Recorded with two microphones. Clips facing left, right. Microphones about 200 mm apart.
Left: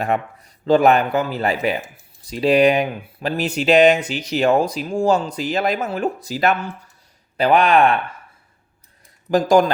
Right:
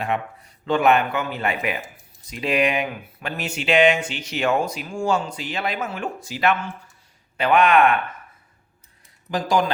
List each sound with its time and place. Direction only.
0.0 s speech: 40° left (ahead or behind)
9.3 s speech: 45° left (ahead or behind)